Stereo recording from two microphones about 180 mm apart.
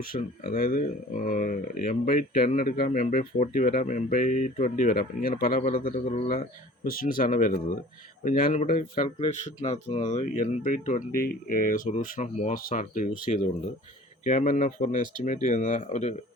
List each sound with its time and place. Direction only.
0.1 s speech: 55° left (ahead or behind)
9.1 s speech: 35° left (ahead or behind)